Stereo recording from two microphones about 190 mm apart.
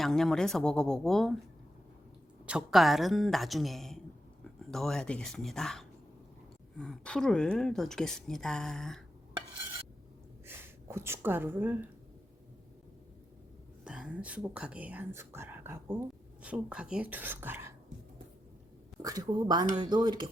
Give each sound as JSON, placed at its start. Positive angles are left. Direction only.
{"t": 0.0, "sound": "speech", "side_deg": 0}
{"t": 2.5, "sound": "speech", "side_deg": -5}
{"t": 10.4, "sound": "speech", "side_deg": -10}
{"t": 13.8, "sound": "speech", "side_deg": -5}
{"t": 19.0, "sound": "speech", "side_deg": -20}